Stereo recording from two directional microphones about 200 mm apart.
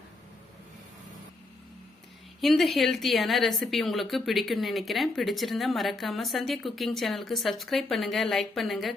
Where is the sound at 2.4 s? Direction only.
Centre (ahead or behind).